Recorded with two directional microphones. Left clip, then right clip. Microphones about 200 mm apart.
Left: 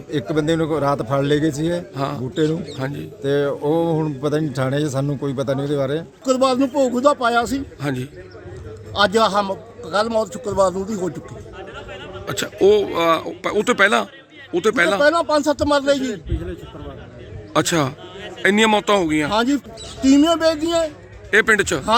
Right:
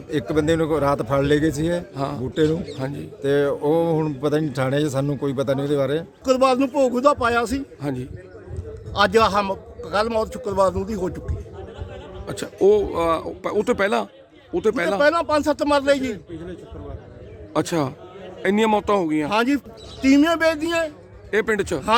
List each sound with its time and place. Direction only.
0.1 s speech: 30° right (ahead or behind)
2.0 s speech: 10° right (ahead or behind)
2.3 s speech: 25° right (ahead or behind)
2.7 s speech: 10° right (ahead or behind)
3.2 s speech: 25° right (ahead or behind)
6.7 s a man's voice: 5° right (ahead or behind)
7.2 s speech: 25° right (ahead or behind)
7.8 s a man's voice: 5° right (ahead or behind)
9.0 s speech: 25° right (ahead or behind)
9.5 s a man's voice: centre (ahead or behind)
12.2 s speech: 10° right (ahead or behind)
15.0 s speech: 25° right (ahead or behind)
15.8 s speech: 5° right (ahead or behind)
17.5 s a man's voice: 5° right (ahead or behind)